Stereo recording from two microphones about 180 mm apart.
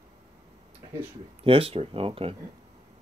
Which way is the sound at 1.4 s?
30° right (ahead or behind).